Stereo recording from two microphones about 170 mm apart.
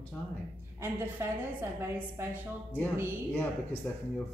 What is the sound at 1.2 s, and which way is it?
Speech, 15° right (ahead or behind).